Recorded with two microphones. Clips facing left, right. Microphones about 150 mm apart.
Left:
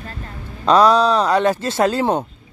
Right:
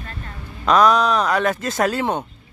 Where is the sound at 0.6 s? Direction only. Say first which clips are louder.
Left 2 dB; 30° left (ahead or behind).